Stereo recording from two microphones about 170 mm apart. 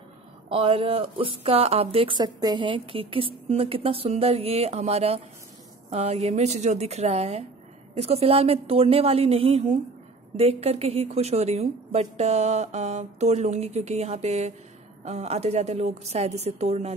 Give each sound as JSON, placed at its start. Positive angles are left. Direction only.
{"t": 0.5, "sound": "speech", "side_deg": -35}